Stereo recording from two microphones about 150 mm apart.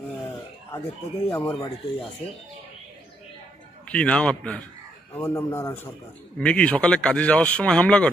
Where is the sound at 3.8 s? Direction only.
5° left (ahead or behind).